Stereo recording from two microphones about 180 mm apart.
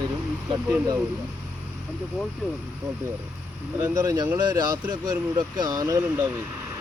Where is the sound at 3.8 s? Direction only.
20° right (ahead or behind).